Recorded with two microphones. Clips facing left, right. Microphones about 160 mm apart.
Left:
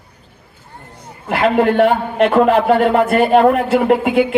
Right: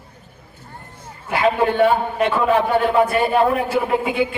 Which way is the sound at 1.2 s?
60° left (ahead or behind).